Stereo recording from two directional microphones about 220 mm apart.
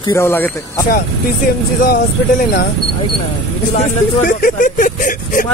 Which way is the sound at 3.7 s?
35° left (ahead or behind).